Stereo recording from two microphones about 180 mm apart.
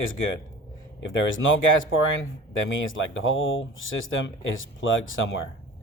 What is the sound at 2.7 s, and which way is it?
Speech, 90° left.